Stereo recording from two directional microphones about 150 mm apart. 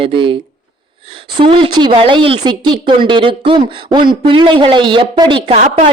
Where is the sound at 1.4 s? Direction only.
35° right (ahead or behind).